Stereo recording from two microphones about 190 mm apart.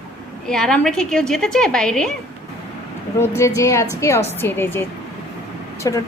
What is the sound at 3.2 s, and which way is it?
A woman's voice, 15° left (ahead or behind).